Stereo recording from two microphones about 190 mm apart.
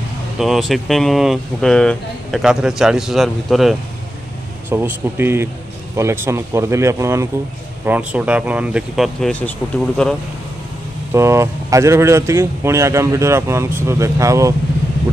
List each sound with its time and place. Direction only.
0.4 s speech: centre (ahead or behind)
4.6 s speech: 10° right (ahead or behind)
11.1 s speech: 15° right (ahead or behind)